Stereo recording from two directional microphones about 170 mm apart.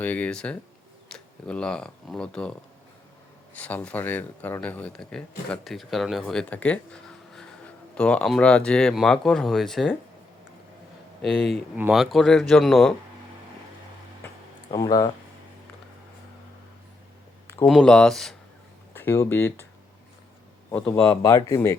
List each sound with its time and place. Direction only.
0.0 s speech: 10° left (ahead or behind)
11.2 s speech: centre (ahead or behind)
14.7 s speech: 20° left (ahead or behind)
17.7 s speech: 5° left (ahead or behind)
18.9 s speech: 15° left (ahead or behind)
20.7 s speech: 10° left (ahead or behind)
21.2 s speech: 20° left (ahead or behind)